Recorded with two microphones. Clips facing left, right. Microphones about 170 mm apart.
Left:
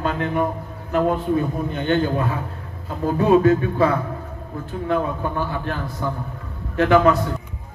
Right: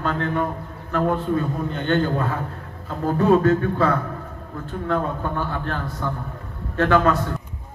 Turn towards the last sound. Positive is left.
turn(degrees=15)  # may be behind; listen again after turning